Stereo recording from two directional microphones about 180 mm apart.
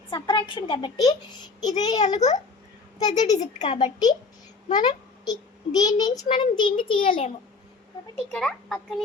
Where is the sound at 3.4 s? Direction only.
40° left (ahead or behind).